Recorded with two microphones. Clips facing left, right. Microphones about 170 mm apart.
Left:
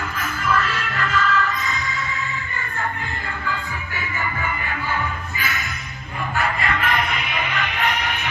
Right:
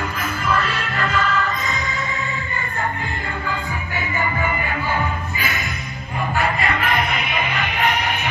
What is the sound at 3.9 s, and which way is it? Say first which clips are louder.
Music: right 5 dB; 20° right (ahead or behind).